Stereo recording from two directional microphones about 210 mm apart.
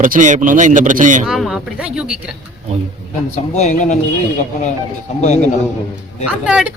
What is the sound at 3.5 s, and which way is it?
Speech, 35° left (ahead or behind).